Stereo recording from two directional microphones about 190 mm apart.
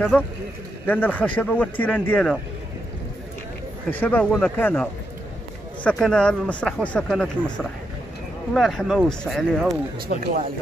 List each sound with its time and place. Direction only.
0.1 s speech: 5° left (ahead or behind)
3.9 s speech: 10° left (ahead or behind)
5.9 s speech: 5° left (ahead or behind)
9.9 s speech: 50° right (ahead or behind)